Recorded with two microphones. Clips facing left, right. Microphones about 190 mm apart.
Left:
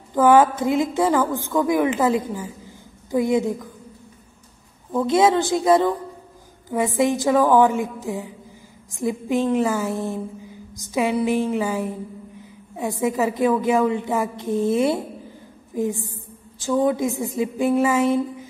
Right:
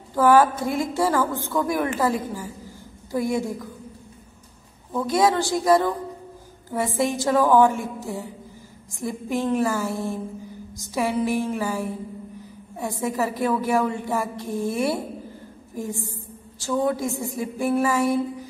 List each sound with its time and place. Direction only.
0.1 s a woman's voice: 20° left (ahead or behind)
5.0 s a woman's voice: 25° left (ahead or behind)